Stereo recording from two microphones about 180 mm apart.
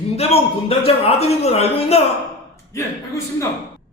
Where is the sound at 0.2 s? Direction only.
35° left (ahead or behind).